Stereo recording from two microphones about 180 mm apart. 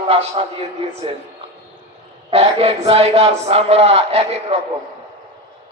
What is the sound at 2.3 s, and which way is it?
A man's voice, 35° right (ahead or behind).